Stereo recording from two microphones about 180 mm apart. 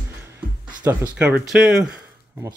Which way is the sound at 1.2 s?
5° right (ahead or behind).